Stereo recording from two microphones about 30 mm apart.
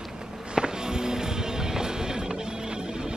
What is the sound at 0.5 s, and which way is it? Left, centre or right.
Music, right.